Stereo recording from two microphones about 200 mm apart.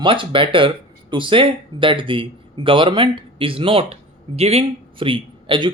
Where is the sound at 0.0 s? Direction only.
25° right (ahead or behind).